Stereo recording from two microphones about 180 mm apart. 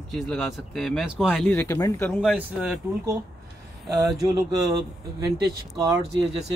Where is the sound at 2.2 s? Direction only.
Centre (ahead or behind).